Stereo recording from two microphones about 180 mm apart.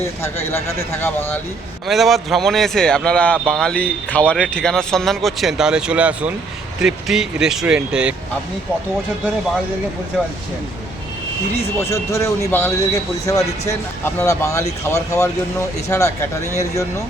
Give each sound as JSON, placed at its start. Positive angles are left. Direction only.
{"t": 0.2, "sound": "speech", "side_deg": 15}
{"t": 1.9, "sound": "speech", "side_deg": 0}
{"t": 11.8, "sound": "speech", "side_deg": 15}